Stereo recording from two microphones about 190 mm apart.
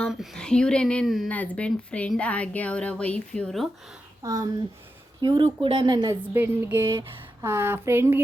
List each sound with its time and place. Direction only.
0.0 s speech: centre (ahead or behind)
4.2 s a woman's voice: 20° right (ahead or behind)
6.3 s speech: 10° right (ahead or behind)